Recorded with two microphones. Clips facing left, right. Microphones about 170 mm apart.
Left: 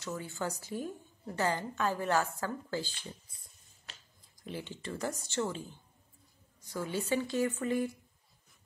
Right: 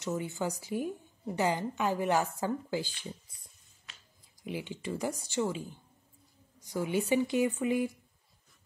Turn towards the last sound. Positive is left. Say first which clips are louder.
# right 2 dB
turn(degrees=-10)  # may be behind; listen again after turning